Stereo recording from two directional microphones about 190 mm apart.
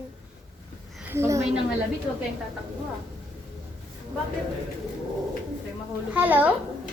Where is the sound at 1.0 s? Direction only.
15° right (ahead or behind).